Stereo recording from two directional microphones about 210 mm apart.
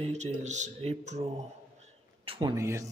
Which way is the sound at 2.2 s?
25° right (ahead or behind).